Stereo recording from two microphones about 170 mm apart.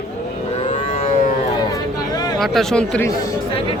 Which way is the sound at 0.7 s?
40° left (ahead or behind).